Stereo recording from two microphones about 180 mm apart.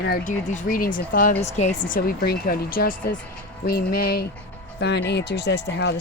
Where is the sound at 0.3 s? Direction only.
45° left (ahead or behind).